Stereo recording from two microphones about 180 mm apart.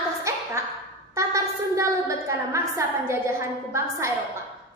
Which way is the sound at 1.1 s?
15° right (ahead or behind).